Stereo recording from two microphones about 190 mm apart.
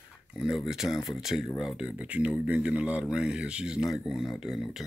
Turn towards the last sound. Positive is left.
turn(degrees=0)  # may be behind; listen again after turning